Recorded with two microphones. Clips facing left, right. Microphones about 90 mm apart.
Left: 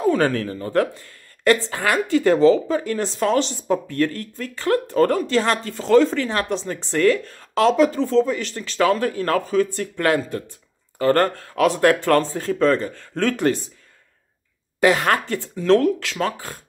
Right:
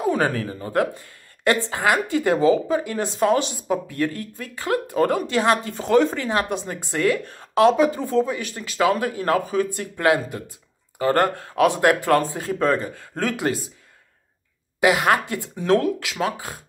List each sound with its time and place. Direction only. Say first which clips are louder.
0.0 s a woman's voice: left 3 dB; 15° right (ahead or behind)
14.8 s a woman's voice: left 1 dB; 10° right (ahead or behind)